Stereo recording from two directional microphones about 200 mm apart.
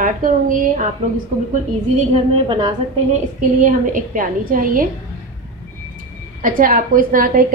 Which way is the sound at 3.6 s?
40° right (ahead or behind).